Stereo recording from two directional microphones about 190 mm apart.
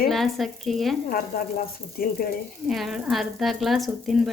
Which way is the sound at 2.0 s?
50° left (ahead or behind).